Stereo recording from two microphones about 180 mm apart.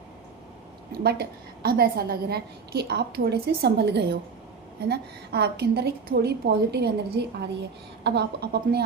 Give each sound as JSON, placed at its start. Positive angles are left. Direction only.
{"t": 0.9, "sound": "a woman's voice", "side_deg": -60}